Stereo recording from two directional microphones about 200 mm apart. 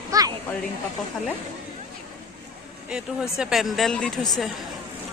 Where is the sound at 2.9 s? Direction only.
5° right (ahead or behind).